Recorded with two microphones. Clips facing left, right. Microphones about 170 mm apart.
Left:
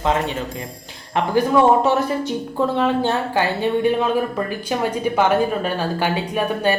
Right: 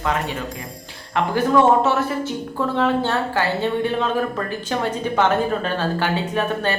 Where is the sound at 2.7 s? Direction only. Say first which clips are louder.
Right 2 dB; 20° left (ahead or behind).